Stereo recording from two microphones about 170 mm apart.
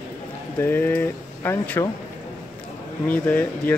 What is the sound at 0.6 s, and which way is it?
Speech, 10° left (ahead or behind).